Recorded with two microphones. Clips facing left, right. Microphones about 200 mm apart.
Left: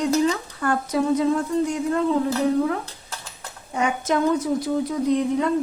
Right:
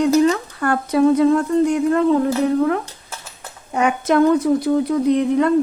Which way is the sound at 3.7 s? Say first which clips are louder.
Right 5 dB; 65° right (ahead or behind).